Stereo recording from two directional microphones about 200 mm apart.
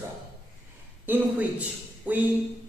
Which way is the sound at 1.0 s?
10° right (ahead or behind).